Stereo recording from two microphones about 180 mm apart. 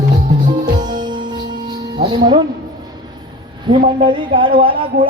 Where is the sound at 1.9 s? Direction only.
25° right (ahead or behind).